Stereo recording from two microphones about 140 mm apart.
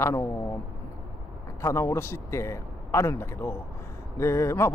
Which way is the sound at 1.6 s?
20° left (ahead or behind).